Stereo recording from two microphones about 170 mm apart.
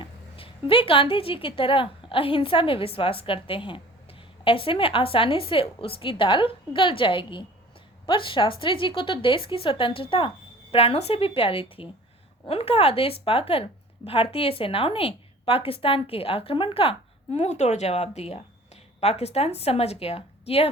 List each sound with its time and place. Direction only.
0.0 s a woman's voice: 30° left (ahead or behind)